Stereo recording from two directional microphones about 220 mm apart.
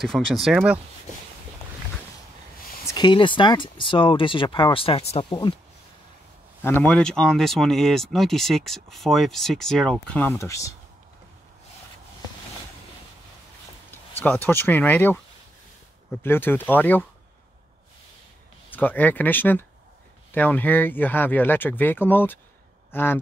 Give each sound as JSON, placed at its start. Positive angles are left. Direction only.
{"t": 0.4, "sound": "speech", "side_deg": 0}
{"t": 2.9, "sound": "speech", "side_deg": 20}
{"t": 6.6, "sound": "speech", "side_deg": 10}
{"t": 14.2, "sound": "speech", "side_deg": 10}
{"t": 16.2, "sound": "speech", "side_deg": 10}
{"t": 18.7, "sound": "speech", "side_deg": 10}